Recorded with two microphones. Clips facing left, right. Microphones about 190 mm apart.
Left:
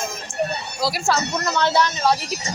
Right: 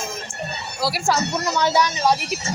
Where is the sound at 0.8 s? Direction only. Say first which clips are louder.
Right 1 dB; 10° right (ahead or behind).